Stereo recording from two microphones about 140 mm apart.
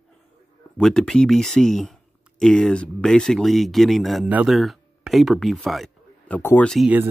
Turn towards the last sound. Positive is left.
turn(degrees=0)  # may be behind; listen again after turning